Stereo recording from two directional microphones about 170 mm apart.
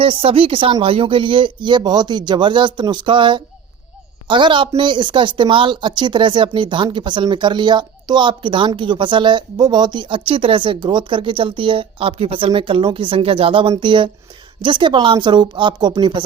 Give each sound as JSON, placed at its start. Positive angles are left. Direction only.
{"t": 0.0, "sound": "speech", "side_deg": -35}